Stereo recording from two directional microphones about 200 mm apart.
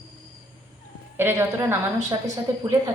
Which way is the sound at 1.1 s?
10° right (ahead or behind).